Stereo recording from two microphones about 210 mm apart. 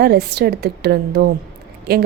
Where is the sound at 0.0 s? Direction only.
50° right (ahead or behind).